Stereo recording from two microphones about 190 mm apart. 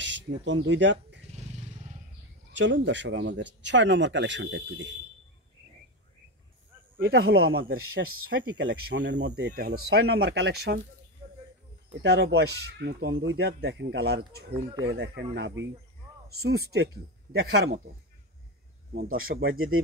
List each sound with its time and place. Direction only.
0.0 s speech: 70° right (ahead or behind)
1.3 s vehicle: 35° right (ahead or behind)
2.5 s speech: 70° right (ahead or behind)
7.1 s speech: 60° right (ahead or behind)
12.0 s speech: 65° right (ahead or behind)
14.5 s speech: 20° right (ahead or behind)
14.9 s speech: 65° right (ahead or behind)
16.3 s speech: 55° right (ahead or behind)
17.3 s speech: 75° right (ahead or behind)
19.3 s speech: 50° right (ahead or behind)